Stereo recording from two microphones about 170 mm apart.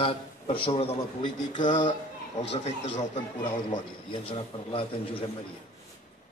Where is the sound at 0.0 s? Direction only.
30° left (ahead or behind).